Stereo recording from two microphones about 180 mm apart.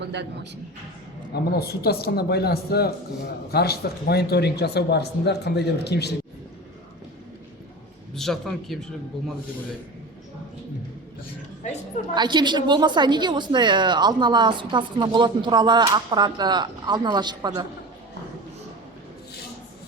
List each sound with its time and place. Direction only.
0.0 s a man's voice: 70° right (ahead or behind)
1.3 s speech: 60° left (ahead or behind)
8.1 s a man's voice: centre (ahead or behind)
12.1 s a woman's voice: 25° right (ahead or behind)